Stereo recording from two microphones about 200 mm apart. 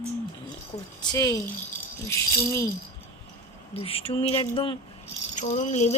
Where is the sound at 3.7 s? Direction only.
30° left (ahead or behind).